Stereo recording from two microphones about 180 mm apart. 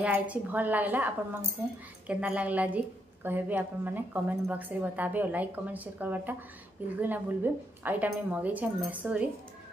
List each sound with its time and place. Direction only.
0.0 s a woman's voice: 10° right (ahead or behind)